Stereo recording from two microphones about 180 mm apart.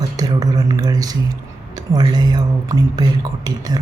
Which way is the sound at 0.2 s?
20° right (ahead or behind).